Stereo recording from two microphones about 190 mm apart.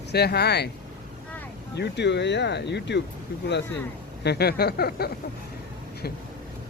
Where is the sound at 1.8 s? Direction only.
65° left (ahead or behind).